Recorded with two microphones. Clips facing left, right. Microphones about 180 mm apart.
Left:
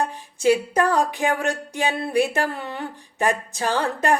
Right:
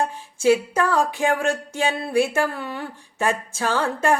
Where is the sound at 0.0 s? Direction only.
15° left (ahead or behind).